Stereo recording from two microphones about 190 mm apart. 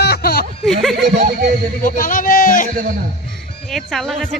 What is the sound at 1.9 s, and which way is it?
Speech, 45° left (ahead or behind).